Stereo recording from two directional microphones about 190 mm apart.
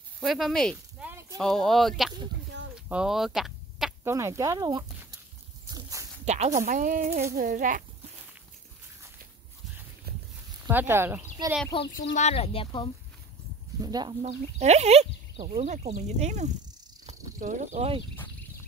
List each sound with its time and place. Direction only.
0.2 s speech: centre (ahead or behind)
1.0 s a sound: 15° right (ahead or behind)
1.4 s speech: centre (ahead or behind)
2.7 s a sound: 5° right (ahead or behind)
4.0 s speech: 15° right (ahead or behind)
5.7 s a sound: 20° right (ahead or behind)
6.2 s speech: 35° right (ahead or behind)
10.7 s speech: 10° right (ahead or behind)
11.8 s speech: 60° left (ahead or behind)
12.2 s speech: 35° left (ahead or behind)
13.7 s speech: 20° right (ahead or behind)
14.2 s speech: 35° right (ahead or behind)